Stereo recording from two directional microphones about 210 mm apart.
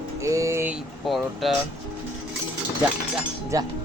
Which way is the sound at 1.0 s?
Centre (ahead or behind).